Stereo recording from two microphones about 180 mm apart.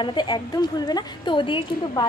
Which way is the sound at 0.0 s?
25° left (ahead or behind).